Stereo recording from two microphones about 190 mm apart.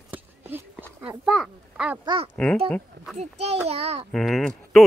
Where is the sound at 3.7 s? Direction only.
35° right (ahead or behind).